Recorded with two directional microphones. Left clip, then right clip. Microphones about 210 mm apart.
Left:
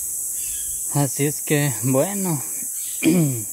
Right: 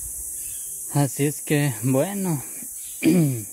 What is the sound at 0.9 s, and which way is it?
Speech, 20° right (ahead or behind).